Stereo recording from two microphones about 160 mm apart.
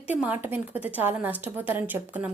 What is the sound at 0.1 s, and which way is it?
A woman's voice, 10° right (ahead or behind).